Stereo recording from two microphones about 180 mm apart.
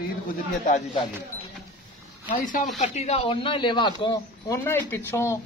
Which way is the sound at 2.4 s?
45° left (ahead or behind).